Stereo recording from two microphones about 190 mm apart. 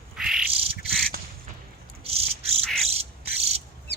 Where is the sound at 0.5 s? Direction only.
30° right (ahead or behind).